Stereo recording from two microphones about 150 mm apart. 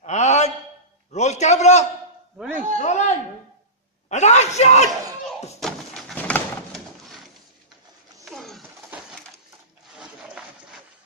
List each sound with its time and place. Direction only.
0.0 s a sound: 50° left (ahead or behind)
2.3 s a man's voice: 5° right (ahead or behind)
2.8 s a man's voice: 50° left (ahead or behind)
5.6 s bird: centre (ahead or behind)
8.3 s coin: centre (ahead or behind)
9.9 s a sound: 5° right (ahead or behind)